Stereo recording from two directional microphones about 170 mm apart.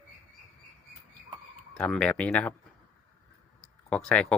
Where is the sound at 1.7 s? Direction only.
5° left (ahead or behind).